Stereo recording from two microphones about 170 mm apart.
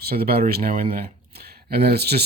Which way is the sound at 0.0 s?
65° right (ahead or behind).